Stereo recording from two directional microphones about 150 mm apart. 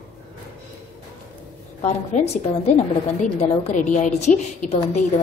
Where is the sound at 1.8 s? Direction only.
50° left (ahead or behind).